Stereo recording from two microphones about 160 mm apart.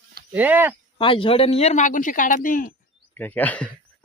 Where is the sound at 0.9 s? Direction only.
35° left (ahead or behind); by 2.7 s 60° left (ahead or behind).